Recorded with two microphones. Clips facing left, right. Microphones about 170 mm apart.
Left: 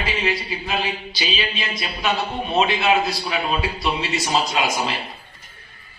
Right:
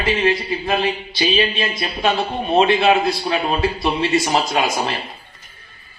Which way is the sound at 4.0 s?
55° right (ahead or behind).